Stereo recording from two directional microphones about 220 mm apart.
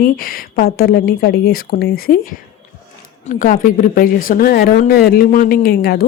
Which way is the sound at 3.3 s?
35° left (ahead or behind).